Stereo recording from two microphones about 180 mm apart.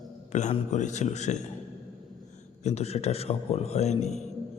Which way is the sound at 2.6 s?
35° left (ahead or behind).